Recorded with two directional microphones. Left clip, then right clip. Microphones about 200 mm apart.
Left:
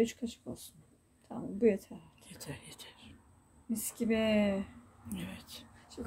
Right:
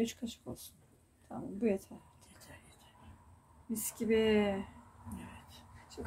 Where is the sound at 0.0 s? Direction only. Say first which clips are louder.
Left 5 dB; centre (ahead or behind).